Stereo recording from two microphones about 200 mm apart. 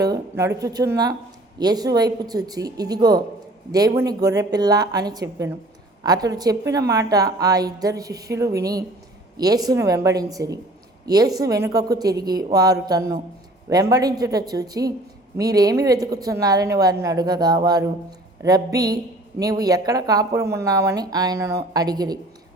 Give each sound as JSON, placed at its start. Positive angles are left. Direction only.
{"t": 0.0, "sound": "a woman's voice", "side_deg": -15}